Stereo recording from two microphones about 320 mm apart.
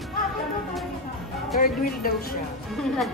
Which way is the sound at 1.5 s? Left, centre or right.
Left.